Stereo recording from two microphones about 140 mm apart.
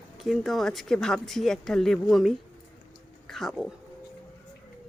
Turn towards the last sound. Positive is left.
turn(degrees=0)  # may be behind; listen again after turning